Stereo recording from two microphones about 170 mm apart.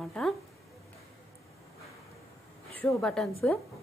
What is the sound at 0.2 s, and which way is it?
Speech, 5° left (ahead or behind).